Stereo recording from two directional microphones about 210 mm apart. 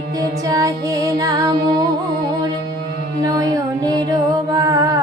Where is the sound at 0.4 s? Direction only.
15° right (ahead or behind).